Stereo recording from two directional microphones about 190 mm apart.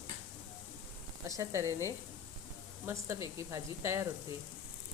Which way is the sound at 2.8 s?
15° right (ahead or behind).